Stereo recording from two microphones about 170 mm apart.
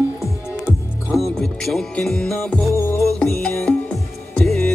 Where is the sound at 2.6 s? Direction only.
15° left (ahead or behind).